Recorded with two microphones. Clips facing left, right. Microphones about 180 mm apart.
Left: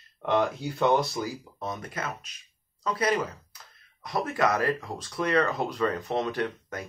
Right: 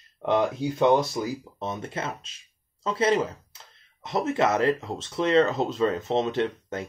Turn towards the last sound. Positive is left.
turn(degrees=-25)  # may be behind; listen again after turning